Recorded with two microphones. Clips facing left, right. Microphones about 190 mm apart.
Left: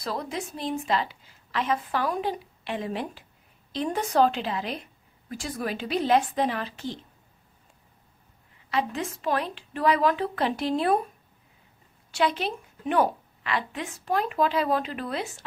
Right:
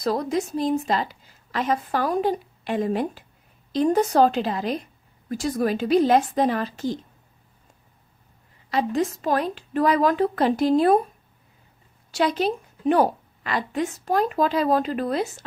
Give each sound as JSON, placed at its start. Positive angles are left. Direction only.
{"t": 0.0, "sound": "a woman's voice", "side_deg": -40}
{"t": 8.6, "sound": "a woman's voice", "side_deg": -40}
{"t": 12.1, "sound": "a woman's voice", "side_deg": -40}